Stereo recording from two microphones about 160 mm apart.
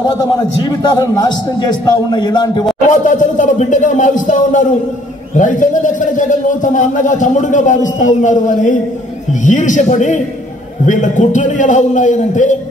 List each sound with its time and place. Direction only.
0.2 s a man's voice: 25° left (ahead or behind)
2.9 s a man's voice: 55° left (ahead or behind)